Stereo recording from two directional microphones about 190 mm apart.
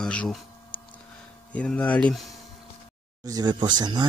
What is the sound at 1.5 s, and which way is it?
Speech, 5° left (ahead or behind).